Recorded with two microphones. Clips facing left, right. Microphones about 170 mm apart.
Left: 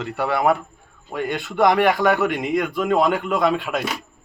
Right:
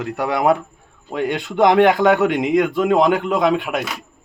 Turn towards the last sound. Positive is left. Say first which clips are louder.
# right 3 dB
turn(degrees=-15)  # may be behind; listen again after turning